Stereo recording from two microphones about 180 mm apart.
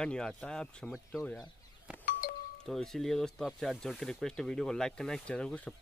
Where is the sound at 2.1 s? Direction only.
50° left (ahead or behind).